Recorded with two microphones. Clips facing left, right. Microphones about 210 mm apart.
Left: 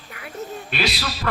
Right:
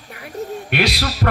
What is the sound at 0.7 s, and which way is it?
Speech, 60° right (ahead or behind).